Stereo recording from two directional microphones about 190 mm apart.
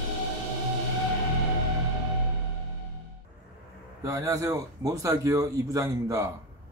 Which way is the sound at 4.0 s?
15° right (ahead or behind).